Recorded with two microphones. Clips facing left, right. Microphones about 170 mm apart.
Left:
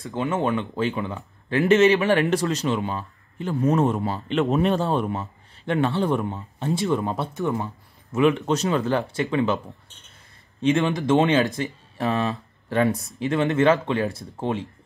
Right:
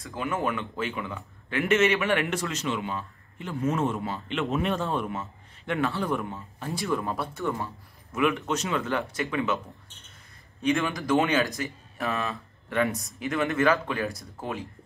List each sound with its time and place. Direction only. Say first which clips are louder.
0.0 s speech: left 5 dB; 25° left (ahead or behind)
8.2 s speech: left 6 dB; 30° left (ahead or behind)
10.6 s speech: left 5 dB; 25° left (ahead or behind)